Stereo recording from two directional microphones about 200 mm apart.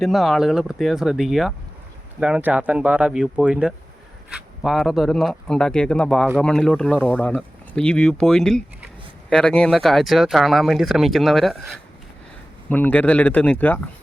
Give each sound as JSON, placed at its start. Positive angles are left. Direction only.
{"t": 0.0, "sound": "speech", "side_deg": 0}